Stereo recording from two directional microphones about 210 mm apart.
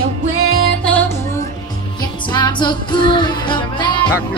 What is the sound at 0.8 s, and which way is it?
Music, 10° left (ahead or behind).